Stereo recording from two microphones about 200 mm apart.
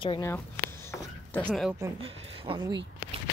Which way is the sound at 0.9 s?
5° left (ahead or behind).